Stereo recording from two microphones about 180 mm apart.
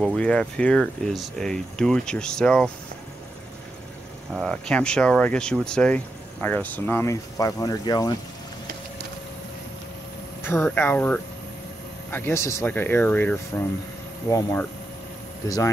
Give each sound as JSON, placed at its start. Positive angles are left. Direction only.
{"t": 0.0, "sound": "speech", "side_deg": 5}
{"t": 4.4, "sound": "speech", "side_deg": 5}
{"t": 10.4, "sound": "speech", "side_deg": 15}